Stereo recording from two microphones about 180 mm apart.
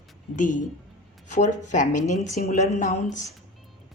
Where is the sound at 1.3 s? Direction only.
40° left (ahead or behind).